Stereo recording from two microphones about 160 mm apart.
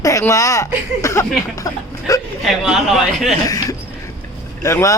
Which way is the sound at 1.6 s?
20° left (ahead or behind).